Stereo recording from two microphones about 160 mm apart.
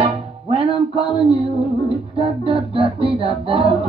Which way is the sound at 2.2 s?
35° right (ahead or behind).